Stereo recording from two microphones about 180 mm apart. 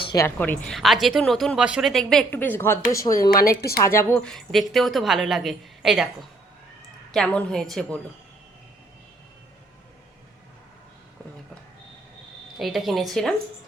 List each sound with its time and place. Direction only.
0.0 s a sound: 25° left (ahead or behind)
0.3 s speech: 10° left (ahead or behind)
3.2 s speech: 55° left (ahead or behind)
3.8 s speech: 10° left (ahead or behind)
7.1 s speech: 5° left (ahead or behind)
12.5 s speech: centre (ahead or behind)